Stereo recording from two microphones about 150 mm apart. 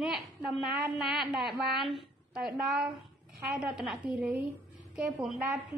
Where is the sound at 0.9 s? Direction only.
Centre (ahead or behind).